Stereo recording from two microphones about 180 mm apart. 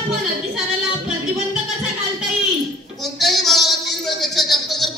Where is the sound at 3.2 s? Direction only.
Centre (ahead or behind).